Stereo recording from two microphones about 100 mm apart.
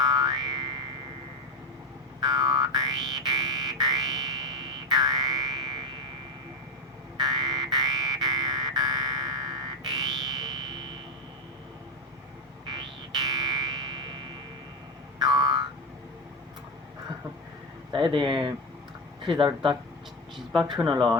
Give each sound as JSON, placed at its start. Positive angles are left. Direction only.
{"t": 0.1, "sound": "boing", "side_deg": -45}
{"t": 2.2, "sound": "music", "side_deg": -45}
{"t": 7.2, "sound": "music", "side_deg": -45}
{"t": 12.6, "sound": "music", "side_deg": -45}
{"t": 15.2, "sound": "a sound", "side_deg": -45}
{"t": 17.9, "sound": "speech", "side_deg": -55}
{"t": 20.3, "sound": "a sound", "side_deg": 0}
{"t": 20.9, "sound": "speech", "side_deg": -45}